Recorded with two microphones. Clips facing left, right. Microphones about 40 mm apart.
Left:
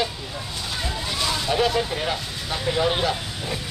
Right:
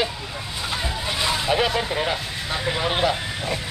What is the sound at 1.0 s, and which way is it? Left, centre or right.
Speech, right.